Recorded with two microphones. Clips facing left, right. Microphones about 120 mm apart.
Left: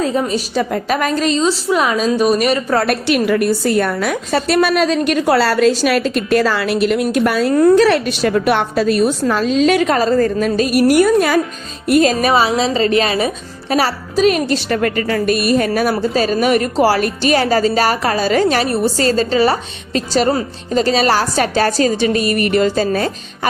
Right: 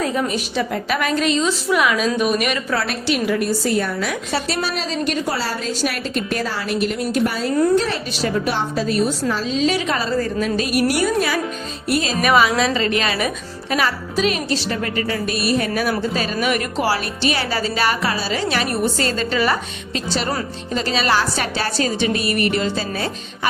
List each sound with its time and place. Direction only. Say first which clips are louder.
0.0 s a woman's voice: left 4 dB; 30° left (ahead or behind)
0.6 s speech: left 3 dB; 40° left (ahead or behind)
2.8 s a woman's voice: left 6 dB; 60° left (ahead or behind)
12.1 s speech: left 2 dB; 30° left (ahead or behind)
19.9 s a woman's voice: left 8 dB; 40° left (ahead or behind)